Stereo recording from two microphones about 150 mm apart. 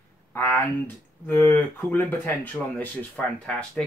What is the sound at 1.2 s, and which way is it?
Speech, 15° left (ahead or behind).